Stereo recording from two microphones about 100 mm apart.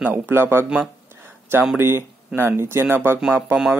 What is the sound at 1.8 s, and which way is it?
Speech, 25° right (ahead or behind).